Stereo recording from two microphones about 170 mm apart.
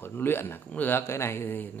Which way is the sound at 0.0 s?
15° left (ahead or behind).